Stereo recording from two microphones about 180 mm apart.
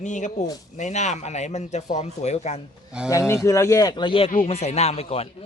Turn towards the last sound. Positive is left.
turn(degrees=35)  # may be behind; listen again after turning